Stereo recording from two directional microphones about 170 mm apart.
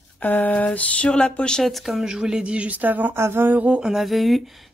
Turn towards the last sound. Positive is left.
turn(degrees=0)  # may be behind; listen again after turning